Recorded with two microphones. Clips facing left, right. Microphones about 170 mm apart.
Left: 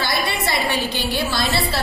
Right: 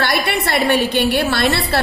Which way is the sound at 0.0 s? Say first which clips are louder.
Right 4 dB; 65° right (ahead or behind).